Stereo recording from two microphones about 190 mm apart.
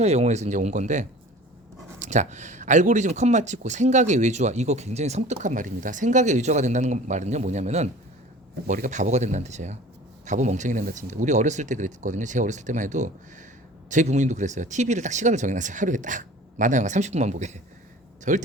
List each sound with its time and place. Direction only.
0.0 s speech: 35° right (ahead or behind)